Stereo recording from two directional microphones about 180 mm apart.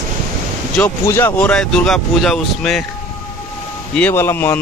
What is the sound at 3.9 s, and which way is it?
Speech, 10° left (ahead or behind).